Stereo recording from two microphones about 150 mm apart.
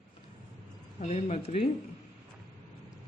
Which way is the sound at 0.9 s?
45° left (ahead or behind).